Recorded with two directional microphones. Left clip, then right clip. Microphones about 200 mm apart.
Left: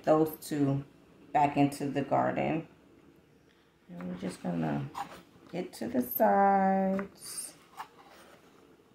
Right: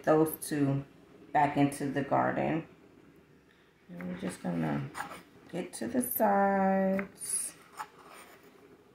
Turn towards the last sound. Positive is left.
turn(degrees=10)  # may be behind; listen again after turning